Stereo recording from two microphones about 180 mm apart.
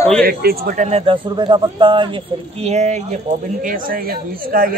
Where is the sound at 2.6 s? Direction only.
40° right (ahead or behind).